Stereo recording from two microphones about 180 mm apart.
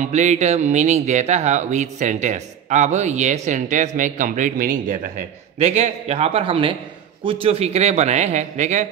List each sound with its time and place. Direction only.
0.0 s speech: 40° right (ahead or behind)